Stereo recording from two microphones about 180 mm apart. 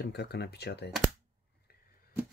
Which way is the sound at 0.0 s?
65° left (ahead or behind).